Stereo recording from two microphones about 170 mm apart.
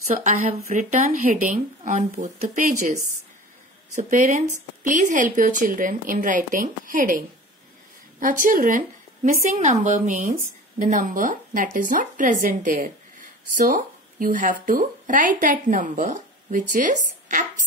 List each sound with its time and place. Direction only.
0.1 s a woman's voice: 50° right (ahead or behind)